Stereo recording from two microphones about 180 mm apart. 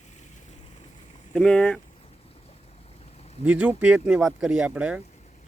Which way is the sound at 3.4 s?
10° right (ahead or behind).